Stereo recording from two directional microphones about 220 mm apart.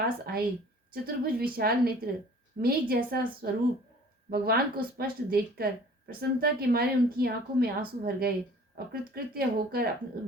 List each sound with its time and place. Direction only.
0.0 s a woman's voice: 45° right (ahead or behind)